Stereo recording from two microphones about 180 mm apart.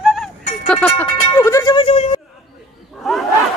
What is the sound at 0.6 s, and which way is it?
Speech, 5° left (ahead or behind).